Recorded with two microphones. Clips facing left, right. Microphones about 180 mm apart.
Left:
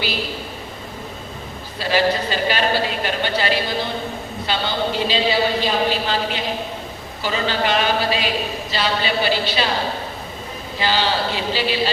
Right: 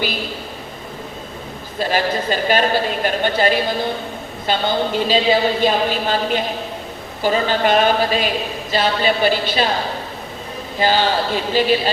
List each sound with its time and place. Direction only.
1.8 s a woman's voice: 50° right (ahead or behind)
10.8 s a woman's voice: 50° right (ahead or behind)